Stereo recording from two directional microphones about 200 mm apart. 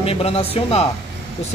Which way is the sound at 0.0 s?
30° left (ahead or behind).